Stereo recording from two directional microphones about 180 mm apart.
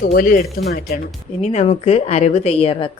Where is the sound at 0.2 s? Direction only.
50° left (ahead or behind).